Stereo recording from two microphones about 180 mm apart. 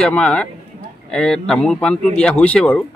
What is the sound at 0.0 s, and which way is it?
A man's voice, 5° left (ahead or behind).